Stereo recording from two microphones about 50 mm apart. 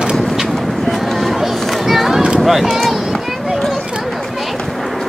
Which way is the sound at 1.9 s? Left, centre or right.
Centre.